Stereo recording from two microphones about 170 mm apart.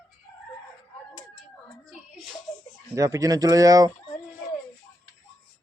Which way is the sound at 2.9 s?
20° right (ahead or behind).